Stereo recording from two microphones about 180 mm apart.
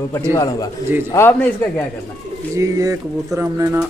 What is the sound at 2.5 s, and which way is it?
Speech, 15° right (ahead or behind).